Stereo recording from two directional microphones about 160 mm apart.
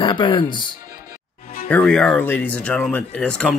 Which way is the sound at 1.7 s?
5° left (ahead or behind).